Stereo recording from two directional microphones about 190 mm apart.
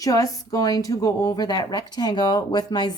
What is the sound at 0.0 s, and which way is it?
Speech, 20° left (ahead or behind).